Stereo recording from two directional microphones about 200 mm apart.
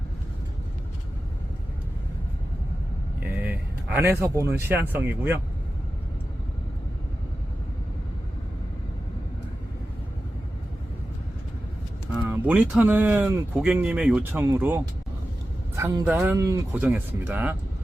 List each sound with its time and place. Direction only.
3.4 s speech: 10° right (ahead or behind)
12.2 s speech: 10° right (ahead or behind)
15.7 s vehicle: 15° right (ahead or behind)
16.0 s speech: 5° right (ahead or behind)